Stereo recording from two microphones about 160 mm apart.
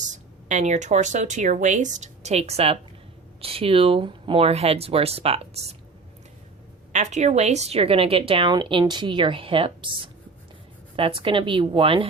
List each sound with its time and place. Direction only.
0.1 s a woman's voice: 50° right (ahead or behind)
6.9 s a woman's voice: 50° right (ahead or behind); by 12.0 s 35° right (ahead or behind)